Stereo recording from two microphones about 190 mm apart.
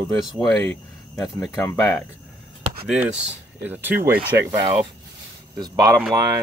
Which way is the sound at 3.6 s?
10° right (ahead or behind).